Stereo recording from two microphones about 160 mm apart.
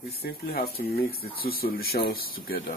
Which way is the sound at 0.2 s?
70° left (ahead or behind).